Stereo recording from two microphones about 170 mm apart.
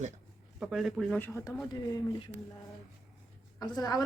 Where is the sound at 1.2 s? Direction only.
10° left (ahead or behind).